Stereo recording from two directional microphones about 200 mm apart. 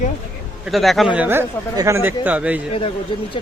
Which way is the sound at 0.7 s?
Centre (ahead or behind).